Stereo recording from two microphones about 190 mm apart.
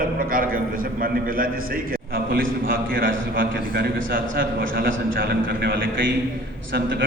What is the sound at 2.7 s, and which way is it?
A man's voice, 50° right (ahead or behind).